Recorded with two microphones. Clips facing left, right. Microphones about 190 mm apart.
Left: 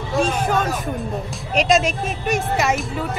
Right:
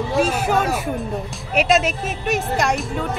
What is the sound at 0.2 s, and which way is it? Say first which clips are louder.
Speech: even; 5° right (ahead or behind).